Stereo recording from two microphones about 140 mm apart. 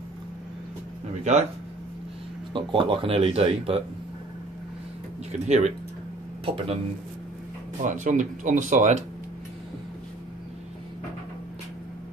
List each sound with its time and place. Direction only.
2.5 s speech: 40° right (ahead or behind)
5.3 s speech: 55° right (ahead or behind)
6.4 s speech: 40° right (ahead or behind)
7.8 s speech: 65° right (ahead or behind)